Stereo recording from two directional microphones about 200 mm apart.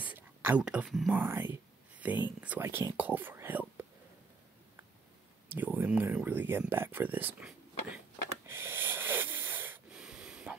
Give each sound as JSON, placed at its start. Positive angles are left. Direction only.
{"t": 0.0, "sound": "speech", "side_deg": -10}
{"t": 5.5, "sound": "speech", "side_deg": -10}
{"t": 8.5, "sound": "wheeze", "side_deg": -10}